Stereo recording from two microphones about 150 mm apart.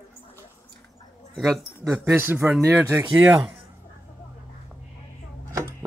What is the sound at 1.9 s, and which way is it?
Speech, 15° right (ahead or behind).